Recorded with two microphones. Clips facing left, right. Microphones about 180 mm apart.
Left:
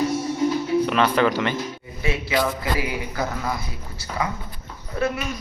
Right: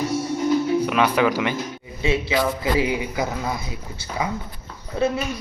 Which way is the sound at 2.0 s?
25° right (ahead or behind).